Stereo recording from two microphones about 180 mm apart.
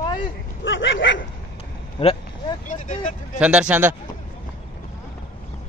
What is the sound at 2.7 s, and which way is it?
Vehicle, 45° left (ahead or behind).